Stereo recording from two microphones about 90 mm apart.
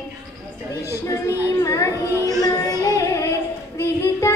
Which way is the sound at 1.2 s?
30° left (ahead or behind).